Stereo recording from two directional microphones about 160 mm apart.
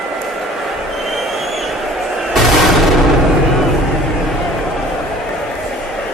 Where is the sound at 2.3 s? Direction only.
Centre (ahead or behind).